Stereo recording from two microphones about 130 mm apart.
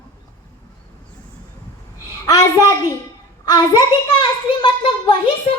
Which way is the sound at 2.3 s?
25° left (ahead or behind).